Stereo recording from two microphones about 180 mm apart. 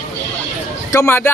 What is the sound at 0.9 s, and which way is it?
Speech, 15° left (ahead or behind).